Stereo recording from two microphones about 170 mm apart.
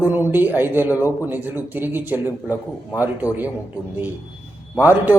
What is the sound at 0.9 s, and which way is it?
Speech, 20° left (ahead or behind).